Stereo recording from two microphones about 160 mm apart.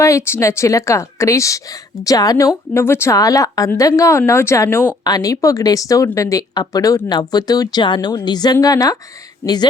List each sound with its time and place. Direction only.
0.0 s speech: 15° left (ahead or behind)